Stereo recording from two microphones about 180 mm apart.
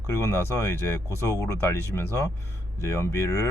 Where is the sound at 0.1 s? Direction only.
15° left (ahead or behind).